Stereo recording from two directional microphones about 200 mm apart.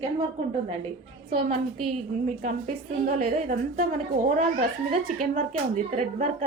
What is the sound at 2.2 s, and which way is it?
A woman's voice, 35° right (ahead or behind).